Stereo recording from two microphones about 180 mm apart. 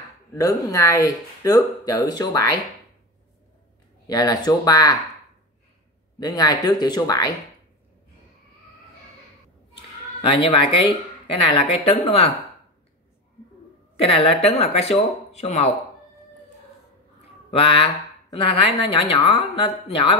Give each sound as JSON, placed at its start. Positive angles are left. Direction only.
{"t": 0.3, "sound": "a woman's voice", "side_deg": 20}
{"t": 4.1, "sound": "a woman's voice", "side_deg": 20}
{"t": 6.1, "sound": "a woman's voice", "side_deg": 20}
{"t": 10.2, "sound": "a woman's voice", "side_deg": 30}
{"t": 14.0, "sound": "speech", "side_deg": 30}
{"t": 17.6, "sound": "a woman's voice", "side_deg": 30}